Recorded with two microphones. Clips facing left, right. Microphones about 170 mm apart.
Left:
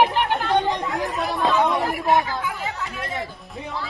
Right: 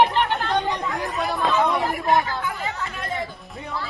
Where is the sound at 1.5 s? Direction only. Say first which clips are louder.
Left 1 dB; centre (ahead or behind).